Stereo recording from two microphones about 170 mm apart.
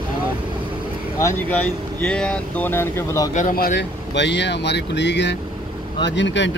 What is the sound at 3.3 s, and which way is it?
Speech, 50° left (ahead or behind).